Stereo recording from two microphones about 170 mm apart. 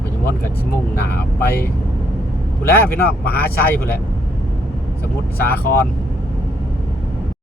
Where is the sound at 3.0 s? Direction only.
65° left (ahead or behind).